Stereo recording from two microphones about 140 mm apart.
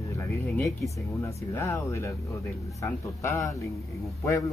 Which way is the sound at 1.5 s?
20° left (ahead or behind).